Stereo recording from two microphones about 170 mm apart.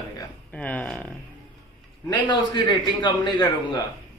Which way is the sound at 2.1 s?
25° left (ahead or behind).